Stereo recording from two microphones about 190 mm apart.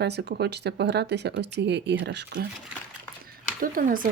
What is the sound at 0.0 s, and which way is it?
Speech, 60° right (ahead or behind).